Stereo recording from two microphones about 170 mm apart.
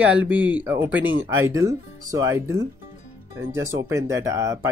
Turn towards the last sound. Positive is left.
turn(degrees=-20)  # may be behind; listen again after turning